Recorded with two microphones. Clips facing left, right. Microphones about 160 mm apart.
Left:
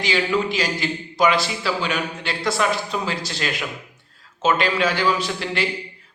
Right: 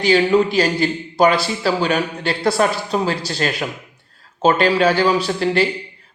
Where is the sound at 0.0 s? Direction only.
35° right (ahead or behind).